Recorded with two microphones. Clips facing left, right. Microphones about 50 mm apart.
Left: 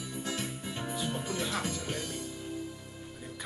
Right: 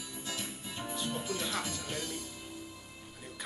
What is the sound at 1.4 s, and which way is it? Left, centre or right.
Music, centre.